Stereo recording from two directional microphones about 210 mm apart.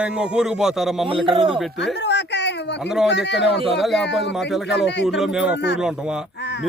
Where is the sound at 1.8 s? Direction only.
55° left (ahead or behind).